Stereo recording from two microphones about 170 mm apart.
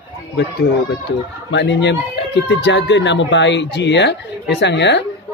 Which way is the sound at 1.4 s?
90° left.